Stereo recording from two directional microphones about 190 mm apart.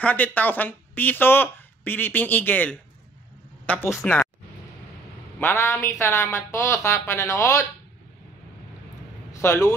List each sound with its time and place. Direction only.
0.0 s speech: 10° left (ahead or behind)
5.4 s speech: 10° left (ahead or behind)
9.3 s speech: 15° left (ahead or behind)